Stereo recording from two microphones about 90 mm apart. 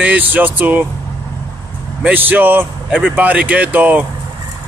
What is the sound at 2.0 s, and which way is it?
Speech, 20° right (ahead or behind).